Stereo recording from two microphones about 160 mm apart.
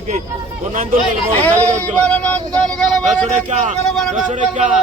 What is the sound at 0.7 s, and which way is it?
Speech, 60° right (ahead or behind).